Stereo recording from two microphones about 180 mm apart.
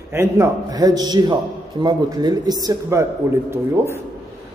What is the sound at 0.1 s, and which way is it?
A man's voice, 15° right (ahead or behind).